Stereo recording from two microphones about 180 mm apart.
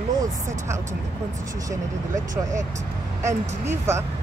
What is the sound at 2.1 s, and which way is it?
Speech, 45° right (ahead or behind).